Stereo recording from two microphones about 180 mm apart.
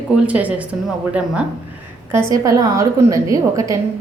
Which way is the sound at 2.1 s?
15° right (ahead or behind).